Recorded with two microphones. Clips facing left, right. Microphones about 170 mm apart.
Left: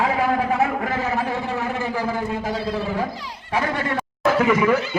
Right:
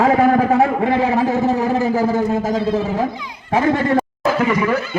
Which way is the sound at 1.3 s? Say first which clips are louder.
Right 8 dB; 40° right (ahead or behind).